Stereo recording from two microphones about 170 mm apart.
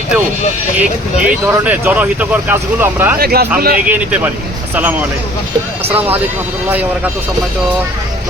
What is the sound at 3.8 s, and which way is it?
Speech, 10° right (ahead or behind).